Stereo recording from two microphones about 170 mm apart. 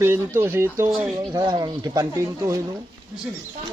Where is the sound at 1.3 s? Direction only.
25° right (ahead or behind).